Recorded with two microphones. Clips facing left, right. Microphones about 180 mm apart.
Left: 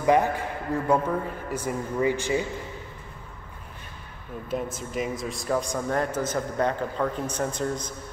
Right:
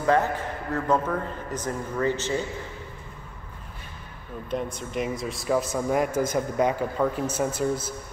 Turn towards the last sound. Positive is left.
turn(degrees=-5)  # may be behind; listen again after turning